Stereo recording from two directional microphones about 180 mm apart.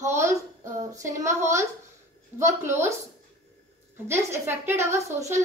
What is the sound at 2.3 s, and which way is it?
Speech, 15° right (ahead or behind).